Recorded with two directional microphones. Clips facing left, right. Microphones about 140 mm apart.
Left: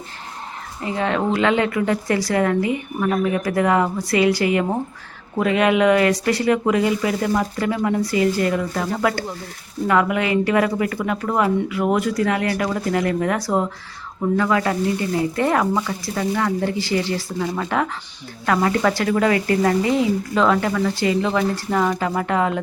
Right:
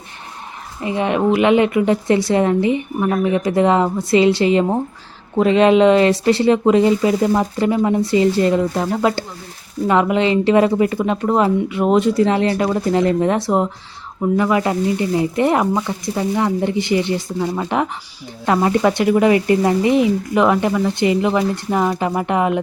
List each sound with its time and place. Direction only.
0.8 s speech: 20° right (ahead or behind)